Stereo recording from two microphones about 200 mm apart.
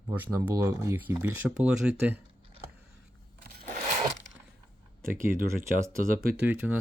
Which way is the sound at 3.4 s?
45° right (ahead or behind).